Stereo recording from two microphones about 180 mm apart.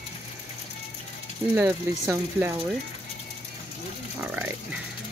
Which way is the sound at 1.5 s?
10° right (ahead or behind).